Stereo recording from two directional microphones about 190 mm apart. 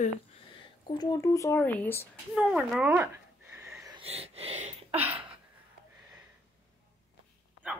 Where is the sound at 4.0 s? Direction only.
30° right (ahead or behind).